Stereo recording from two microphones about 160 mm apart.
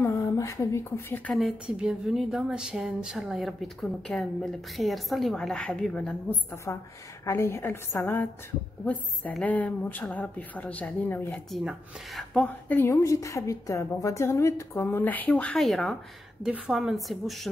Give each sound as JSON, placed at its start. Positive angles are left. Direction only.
{"t": 0.0, "sound": "speech", "side_deg": 15}
{"t": 1.3, "sound": "a woman's voice", "side_deg": -5}
{"t": 6.5, "sound": "speech", "side_deg": 15}
{"t": 11.5, "sound": "a woman's voice", "side_deg": 0}